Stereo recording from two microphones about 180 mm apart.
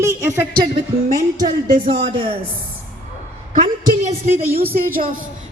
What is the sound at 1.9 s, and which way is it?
Speech, 30° right (ahead or behind).